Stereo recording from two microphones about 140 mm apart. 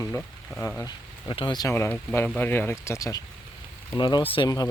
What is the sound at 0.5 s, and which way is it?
Speech, centre (ahead or behind).